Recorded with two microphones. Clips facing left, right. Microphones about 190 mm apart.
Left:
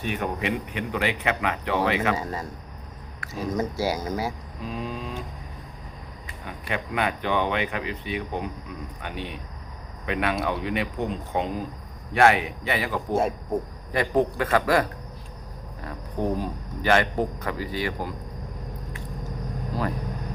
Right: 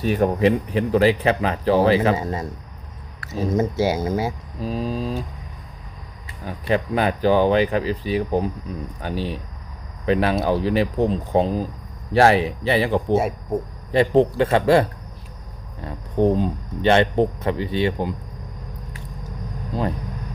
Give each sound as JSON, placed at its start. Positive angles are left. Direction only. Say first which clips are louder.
{"t": 0.0, "sound": "speech", "louder": "right 10 dB", "side_deg": -35}
{"t": 6.4, "sound": "speech", "louder": "right 9 dB", "side_deg": -35}